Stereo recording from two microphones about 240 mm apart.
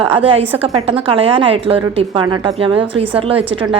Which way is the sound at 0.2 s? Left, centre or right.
Right.